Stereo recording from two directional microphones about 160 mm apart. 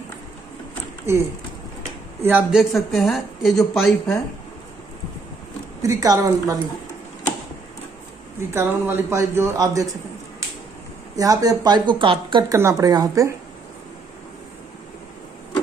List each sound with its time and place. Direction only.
2.2 s a man's voice: 10° right (ahead or behind)
2.7 s a woman's voice: centre (ahead or behind)
5.8 s speech: 20° right (ahead or behind)
8.5 s a man's voice: 15° right (ahead or behind)
11.1 s speech: 20° right (ahead or behind)